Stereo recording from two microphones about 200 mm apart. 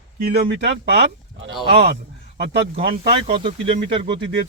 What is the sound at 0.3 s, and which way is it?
Speech, 60° right (ahead or behind).